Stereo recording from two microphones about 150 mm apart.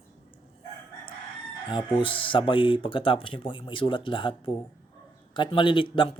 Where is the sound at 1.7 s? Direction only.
30° left (ahead or behind).